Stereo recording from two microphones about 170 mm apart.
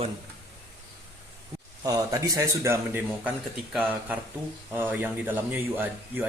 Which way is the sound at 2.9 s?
10° right (ahead or behind).